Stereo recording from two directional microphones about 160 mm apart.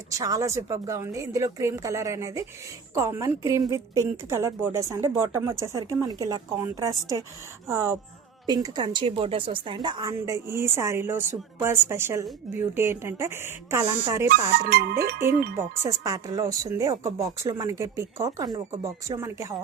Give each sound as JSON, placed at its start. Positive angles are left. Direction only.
{"t": 0.1, "sound": "a woman's voice", "side_deg": -20}
{"t": 14.3, "sound": "speech", "side_deg": -75}
{"t": 15.9, "sound": "a woman's voice", "side_deg": -20}